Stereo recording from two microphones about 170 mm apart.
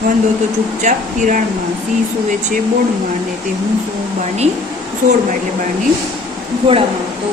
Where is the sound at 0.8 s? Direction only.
45° right (ahead or behind).